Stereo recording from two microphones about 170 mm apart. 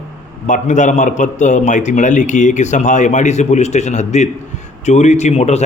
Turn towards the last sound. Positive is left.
turn(degrees=40)  # may be behind; listen again after turning